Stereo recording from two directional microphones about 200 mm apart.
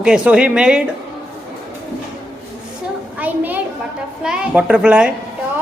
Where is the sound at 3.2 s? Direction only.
10° right (ahead or behind).